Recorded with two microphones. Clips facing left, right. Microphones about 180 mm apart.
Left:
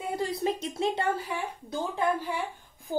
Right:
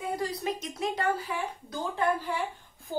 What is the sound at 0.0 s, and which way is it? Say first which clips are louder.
Speech: left 2 dB; 25° left (ahead or behind).